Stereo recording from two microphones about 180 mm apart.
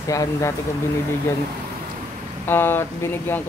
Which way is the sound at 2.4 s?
10° left (ahead or behind).